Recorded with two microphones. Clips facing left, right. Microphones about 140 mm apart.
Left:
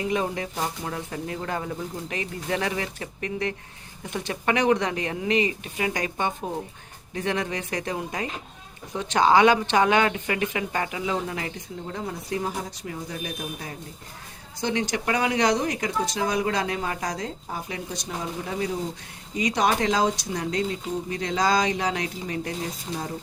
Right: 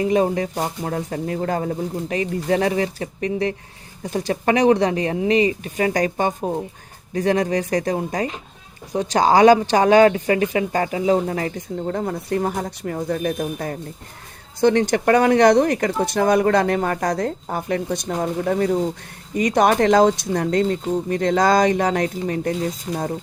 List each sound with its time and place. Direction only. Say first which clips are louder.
0.0 s speech: right 8 dB; 35° right (ahead or behind)